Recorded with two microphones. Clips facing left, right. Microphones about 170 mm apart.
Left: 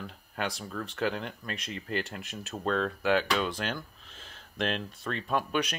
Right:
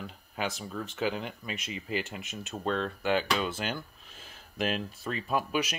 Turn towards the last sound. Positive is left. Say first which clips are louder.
# even
turn(degrees=-5)  # may be behind; listen again after turning